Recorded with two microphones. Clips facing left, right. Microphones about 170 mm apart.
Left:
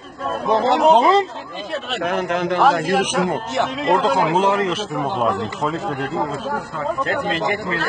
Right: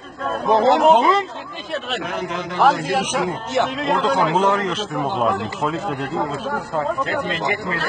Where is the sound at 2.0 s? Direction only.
60° left (ahead or behind).